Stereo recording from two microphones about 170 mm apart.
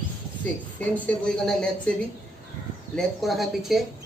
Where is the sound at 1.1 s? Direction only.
5° left (ahead or behind).